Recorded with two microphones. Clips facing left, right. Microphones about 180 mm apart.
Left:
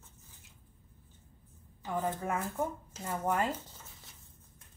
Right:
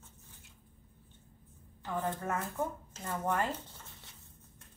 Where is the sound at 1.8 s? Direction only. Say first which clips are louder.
Left 1 dB; centre (ahead or behind).